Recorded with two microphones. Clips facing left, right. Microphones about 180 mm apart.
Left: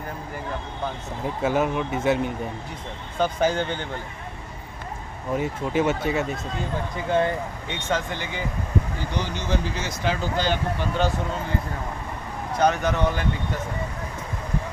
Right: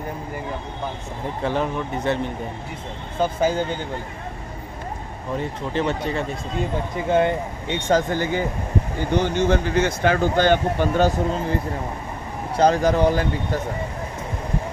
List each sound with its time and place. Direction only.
1.4 s speech: 5° left (ahead or behind)
3.2 s speech: 10° right (ahead or behind)
5.3 s speech: 10° left (ahead or behind)
7.1 s speech: 20° right (ahead or behind)
7.9 s speech: 45° right (ahead or behind)